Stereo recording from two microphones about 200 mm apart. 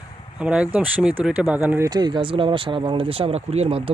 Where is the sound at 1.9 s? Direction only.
20° right (ahead or behind).